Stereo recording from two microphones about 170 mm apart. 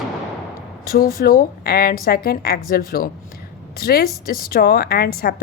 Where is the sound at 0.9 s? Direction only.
60° left (ahead or behind).